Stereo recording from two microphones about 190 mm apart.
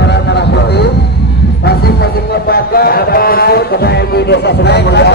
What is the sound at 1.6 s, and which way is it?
Speech, 55° left (ahead or behind).